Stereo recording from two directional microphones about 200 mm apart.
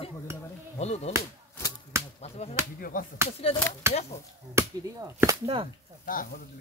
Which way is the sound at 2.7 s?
45° left (ahead or behind).